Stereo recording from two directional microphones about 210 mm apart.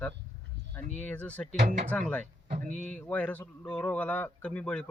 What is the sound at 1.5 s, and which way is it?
Speech, 35° right (ahead or behind).